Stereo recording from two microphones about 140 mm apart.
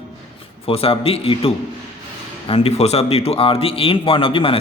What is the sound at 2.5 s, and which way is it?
A man's voice, 45° left (ahead or behind).